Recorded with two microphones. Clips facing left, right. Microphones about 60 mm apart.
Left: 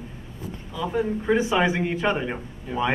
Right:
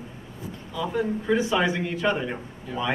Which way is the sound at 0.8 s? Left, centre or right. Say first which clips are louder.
Left 1 dB; centre.